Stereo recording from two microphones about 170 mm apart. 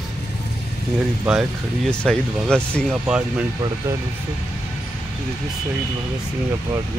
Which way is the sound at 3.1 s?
5° right (ahead or behind).